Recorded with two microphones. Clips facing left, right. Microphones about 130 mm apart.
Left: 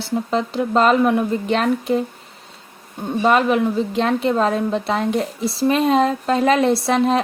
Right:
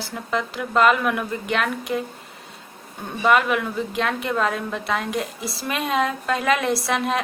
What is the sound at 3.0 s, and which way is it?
A woman's voice, 30° left (ahead or behind).